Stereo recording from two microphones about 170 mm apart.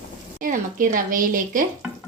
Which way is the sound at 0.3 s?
50° right (ahead or behind).